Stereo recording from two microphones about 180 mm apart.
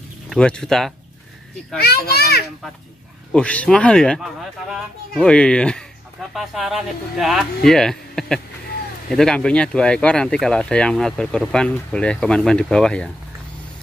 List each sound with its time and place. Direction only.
0.3 s speech: 5° left (ahead or behind)
1.8 s a child's voice: 60° left (ahead or behind)
3.3 s speech: 5° left (ahead or behind)